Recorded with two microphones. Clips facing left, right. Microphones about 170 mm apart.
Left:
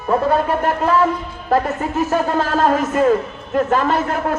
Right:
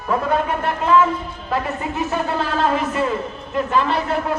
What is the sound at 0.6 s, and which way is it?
A man's voice, 40° left (ahead or behind).